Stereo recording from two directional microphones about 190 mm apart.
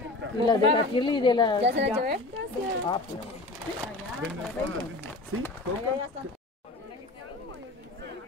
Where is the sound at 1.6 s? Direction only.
65° right (ahead or behind).